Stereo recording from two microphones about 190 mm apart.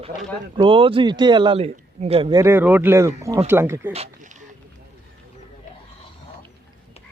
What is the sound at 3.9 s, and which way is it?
Speech, 30° right (ahead or behind).